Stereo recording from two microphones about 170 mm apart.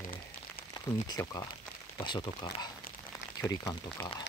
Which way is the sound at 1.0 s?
25° left (ahead or behind).